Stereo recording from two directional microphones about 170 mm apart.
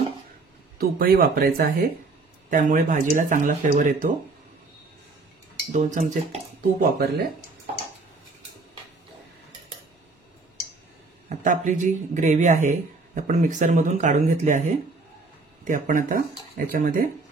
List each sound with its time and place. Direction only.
0.7 s speech: 60° right (ahead or behind)
2.5 s speech: 50° right (ahead or behind)
5.7 s speech: 45° right (ahead or behind); by 7.2 s 60° right (ahead or behind)
11.2 s speech: 45° right (ahead or behind)
15.6 s speech: 50° right (ahead or behind)